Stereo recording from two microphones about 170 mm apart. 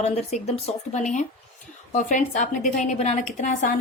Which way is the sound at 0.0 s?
40° left (ahead or behind).